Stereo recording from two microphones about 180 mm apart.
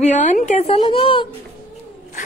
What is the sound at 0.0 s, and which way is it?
A woman's voice, 40° left (ahead or behind).